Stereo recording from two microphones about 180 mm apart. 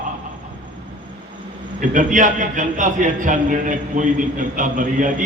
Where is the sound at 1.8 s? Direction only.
45° right (ahead or behind).